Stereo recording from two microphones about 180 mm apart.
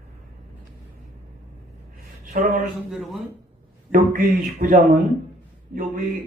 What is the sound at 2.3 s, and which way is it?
Speech, 50° right (ahead or behind).